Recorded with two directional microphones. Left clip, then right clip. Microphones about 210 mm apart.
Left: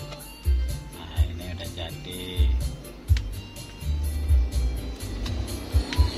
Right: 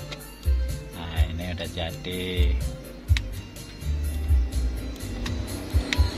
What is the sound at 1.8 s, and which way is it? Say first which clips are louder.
Speech: right 5 dB; 45° right (ahead or behind).